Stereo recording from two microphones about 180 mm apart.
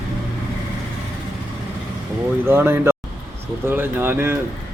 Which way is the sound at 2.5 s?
10° right (ahead or behind).